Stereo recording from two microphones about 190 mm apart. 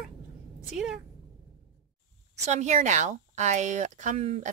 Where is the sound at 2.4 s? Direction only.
35° right (ahead or behind).